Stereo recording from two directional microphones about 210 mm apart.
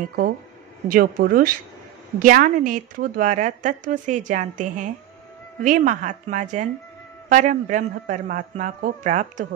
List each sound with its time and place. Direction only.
0.9 s a woman's voice: 45° right (ahead or behind)